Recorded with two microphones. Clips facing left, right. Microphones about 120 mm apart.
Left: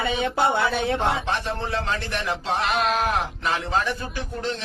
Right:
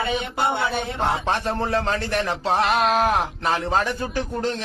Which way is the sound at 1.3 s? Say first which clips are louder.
Right 3 dB; 40° right (ahead or behind).